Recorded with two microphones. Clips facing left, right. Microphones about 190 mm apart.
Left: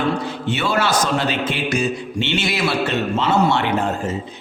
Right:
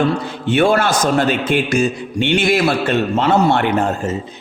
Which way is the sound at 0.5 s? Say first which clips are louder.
Right 6 dB; 50° right (ahead or behind).